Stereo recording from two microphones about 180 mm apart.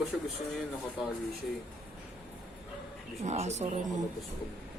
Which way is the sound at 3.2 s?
40° right (ahead or behind).